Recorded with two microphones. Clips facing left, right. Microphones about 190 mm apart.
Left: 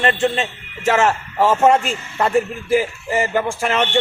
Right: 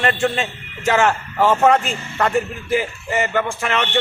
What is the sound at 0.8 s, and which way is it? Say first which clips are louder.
Speech: left 1 dB; 5° left (ahead or behind).